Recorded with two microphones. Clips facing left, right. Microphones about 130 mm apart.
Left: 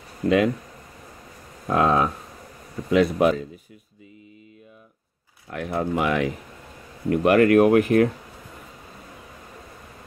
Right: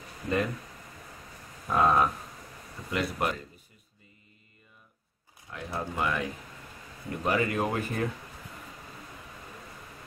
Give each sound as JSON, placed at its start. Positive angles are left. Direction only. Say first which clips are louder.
{"t": 0.2, "sound": "speech", "louder": "left 10 dB", "side_deg": 60}
{"t": 1.7, "sound": "speech", "louder": "left 4 dB", "side_deg": 90}
{"t": 5.5, "sound": "speech", "louder": "left 10 dB", "side_deg": 70}
{"t": 7.1, "sound": "speech", "louder": "left 12 dB", "side_deg": 70}